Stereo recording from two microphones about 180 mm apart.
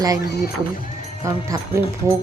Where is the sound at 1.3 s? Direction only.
15° right (ahead or behind).